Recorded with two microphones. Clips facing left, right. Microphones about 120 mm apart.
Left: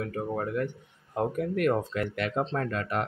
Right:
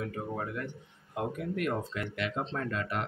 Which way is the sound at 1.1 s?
50° left (ahead or behind).